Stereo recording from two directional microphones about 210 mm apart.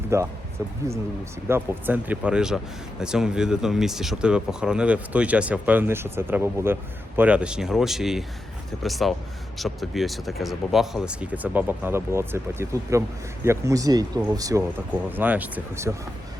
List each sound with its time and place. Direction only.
0.1 s speech: 15° right (ahead or behind)
1.5 s speech: 10° right (ahead or behind)